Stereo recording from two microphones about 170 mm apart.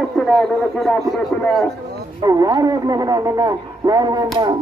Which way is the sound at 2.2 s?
20° right (ahead or behind).